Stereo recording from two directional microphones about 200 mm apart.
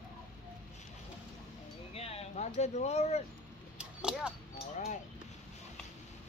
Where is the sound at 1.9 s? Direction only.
30° left (ahead or behind).